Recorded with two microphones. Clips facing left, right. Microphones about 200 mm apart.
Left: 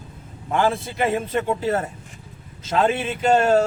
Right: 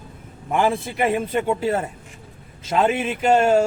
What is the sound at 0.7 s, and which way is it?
Speech, 20° right (ahead or behind).